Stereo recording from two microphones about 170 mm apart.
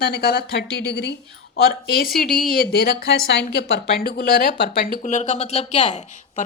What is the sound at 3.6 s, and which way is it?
Speech, 75° left (ahead or behind).